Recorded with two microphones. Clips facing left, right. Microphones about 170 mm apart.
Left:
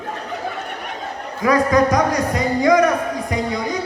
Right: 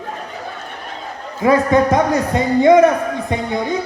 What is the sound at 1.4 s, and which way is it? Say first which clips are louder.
A man's voice: right 2 dB; 25° right (ahead or behind).